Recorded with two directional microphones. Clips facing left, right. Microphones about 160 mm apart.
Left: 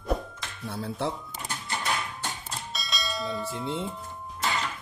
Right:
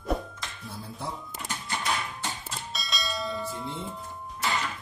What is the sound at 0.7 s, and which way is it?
Speech, 75° left (ahead or behind).